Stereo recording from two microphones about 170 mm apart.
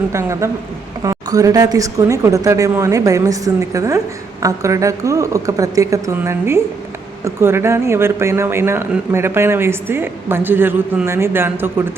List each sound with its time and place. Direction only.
0.1 s a man's voice: 15° right (ahead or behind)